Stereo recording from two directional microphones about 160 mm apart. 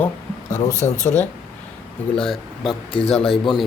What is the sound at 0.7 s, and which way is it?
Speech, 20° left (ahead or behind).